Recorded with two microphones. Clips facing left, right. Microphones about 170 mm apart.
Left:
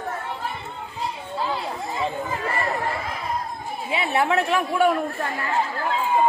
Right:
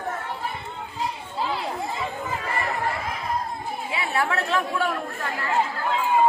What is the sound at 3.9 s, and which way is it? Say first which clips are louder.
Speech: left 5 dB; 20° left (ahead or behind).